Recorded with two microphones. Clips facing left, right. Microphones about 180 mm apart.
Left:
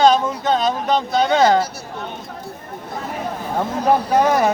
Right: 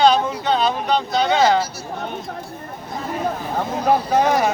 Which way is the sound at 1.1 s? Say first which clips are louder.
Left 2 dB; 50° left (ahead or behind).